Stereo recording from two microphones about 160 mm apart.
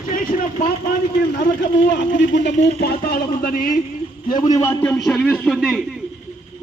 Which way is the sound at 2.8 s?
75° left (ahead or behind).